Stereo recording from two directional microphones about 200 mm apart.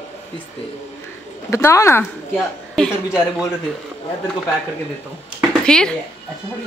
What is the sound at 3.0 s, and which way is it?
Speech, 15° left (ahead or behind).